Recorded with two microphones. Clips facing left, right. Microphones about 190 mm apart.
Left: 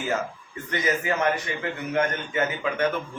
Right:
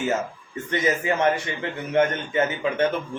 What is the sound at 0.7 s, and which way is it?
A man's voice, 25° right (ahead or behind).